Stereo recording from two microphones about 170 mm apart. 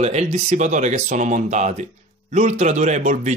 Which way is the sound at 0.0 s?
40° right (ahead or behind).